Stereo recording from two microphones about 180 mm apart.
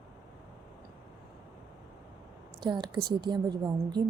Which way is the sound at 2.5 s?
25° right (ahead or behind).